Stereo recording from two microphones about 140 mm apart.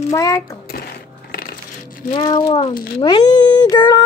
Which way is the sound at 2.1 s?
30° left (ahead or behind).